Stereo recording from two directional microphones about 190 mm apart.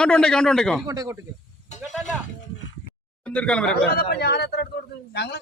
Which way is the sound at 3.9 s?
55° left (ahead or behind).